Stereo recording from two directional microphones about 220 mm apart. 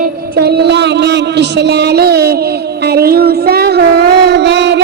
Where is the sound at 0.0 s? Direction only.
45° right (ahead or behind).